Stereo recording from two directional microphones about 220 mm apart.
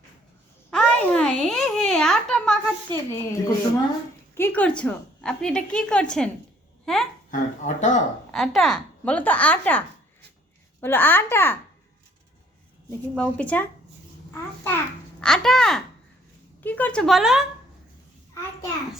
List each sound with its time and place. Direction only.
0.7 s babbling: 5° left (ahead or behind)
3.1 s a woman's voice: 15° left (ahead or behind)
7.3 s speech: 35° left (ahead or behind)
8.3 s speech: centre (ahead or behind)
12.9 s speech: 5° left (ahead or behind)
15.2 s a woman's voice: 5° left (ahead or behind)